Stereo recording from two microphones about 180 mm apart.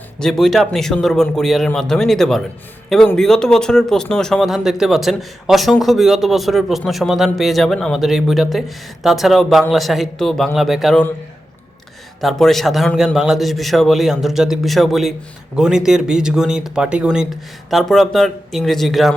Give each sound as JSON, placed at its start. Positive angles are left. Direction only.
{"t": 0.2, "sound": "speech", "side_deg": 0}
{"t": 12.2, "sound": "speech", "side_deg": 0}